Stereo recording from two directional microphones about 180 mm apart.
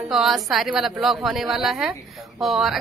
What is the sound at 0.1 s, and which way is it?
A woman's voice, centre (ahead or behind).